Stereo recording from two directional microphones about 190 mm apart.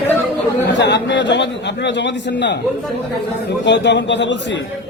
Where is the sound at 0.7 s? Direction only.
65° left (ahead or behind).